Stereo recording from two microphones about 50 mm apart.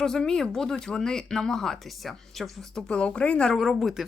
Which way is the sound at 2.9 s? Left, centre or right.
Centre.